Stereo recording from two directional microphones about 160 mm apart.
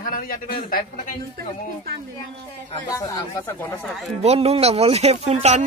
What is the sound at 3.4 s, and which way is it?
Speech, 15° left (ahead or behind).